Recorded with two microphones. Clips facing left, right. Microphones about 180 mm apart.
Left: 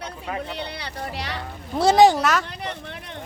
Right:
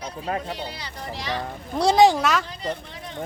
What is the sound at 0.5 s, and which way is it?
Speech, 65° left (ahead or behind).